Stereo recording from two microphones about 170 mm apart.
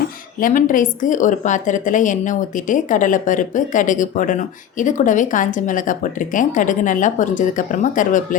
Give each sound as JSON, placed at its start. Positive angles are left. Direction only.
{"t": 0.3, "sound": "a woman's voice", "side_deg": 55}